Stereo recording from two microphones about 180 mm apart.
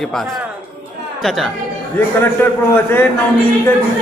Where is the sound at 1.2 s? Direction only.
Centre (ahead or behind).